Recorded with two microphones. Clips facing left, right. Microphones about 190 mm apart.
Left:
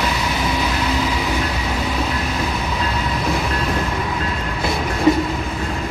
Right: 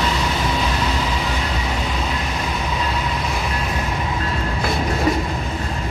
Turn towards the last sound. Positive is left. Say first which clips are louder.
# left 5 dB
turn(degrees=25)  # may be behind; listen again after turning